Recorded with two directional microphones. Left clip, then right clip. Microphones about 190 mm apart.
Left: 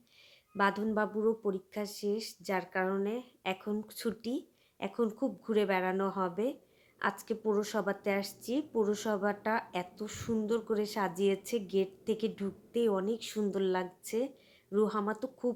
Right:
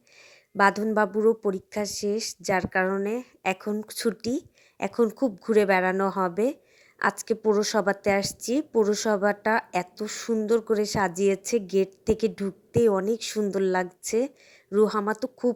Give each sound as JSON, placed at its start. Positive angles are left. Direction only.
{"t": 0.5, "sound": "a woman's voice", "side_deg": -40}